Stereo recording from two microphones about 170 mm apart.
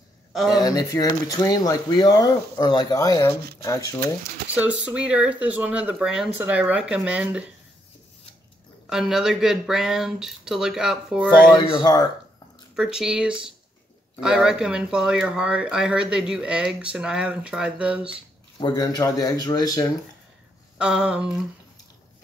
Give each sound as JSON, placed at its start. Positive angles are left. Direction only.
{"t": 0.3, "sound": "speech", "side_deg": 0}
{"t": 0.6, "sound": "speech", "side_deg": 20}
{"t": 4.6, "sound": "speech", "side_deg": -5}
{"t": 8.8, "sound": "speech", "side_deg": -5}
{"t": 11.8, "sound": "speech", "side_deg": 20}
{"t": 12.7, "sound": "speech", "side_deg": -5}
{"t": 18.6, "sound": "speech", "side_deg": 25}
{"t": 20.7, "sound": "speech", "side_deg": -5}